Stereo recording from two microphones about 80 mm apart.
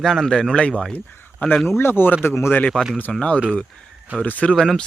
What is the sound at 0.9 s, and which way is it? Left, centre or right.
Speech, left.